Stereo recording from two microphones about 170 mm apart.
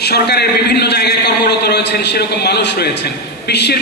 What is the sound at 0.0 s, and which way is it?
A man's voice, 70° left (ahead or behind).